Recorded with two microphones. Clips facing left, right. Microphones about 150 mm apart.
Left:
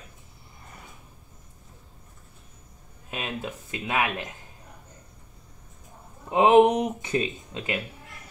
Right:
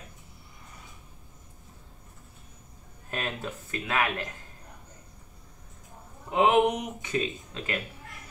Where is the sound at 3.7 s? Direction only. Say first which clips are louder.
Left 1 dB; 20° left (ahead or behind).